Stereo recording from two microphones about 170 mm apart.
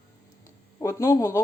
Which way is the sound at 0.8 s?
20° left (ahead or behind).